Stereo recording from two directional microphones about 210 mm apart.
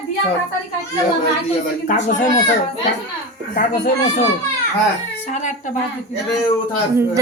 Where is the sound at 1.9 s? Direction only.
40° left (ahead or behind).